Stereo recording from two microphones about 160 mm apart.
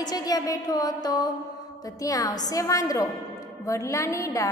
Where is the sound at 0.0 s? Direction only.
25° left (ahead or behind).